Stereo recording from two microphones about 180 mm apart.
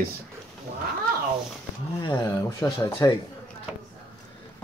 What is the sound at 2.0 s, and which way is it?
Speech, 25° left (ahead or behind).